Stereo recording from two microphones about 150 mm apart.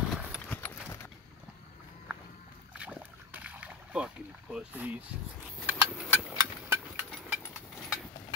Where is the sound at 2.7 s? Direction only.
10° right (ahead or behind).